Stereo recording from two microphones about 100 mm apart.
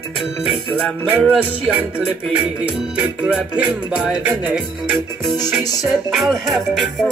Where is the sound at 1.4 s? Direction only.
15° right (ahead or behind).